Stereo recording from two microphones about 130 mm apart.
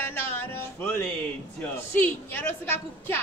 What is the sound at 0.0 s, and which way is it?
Music, 20° left (ahead or behind).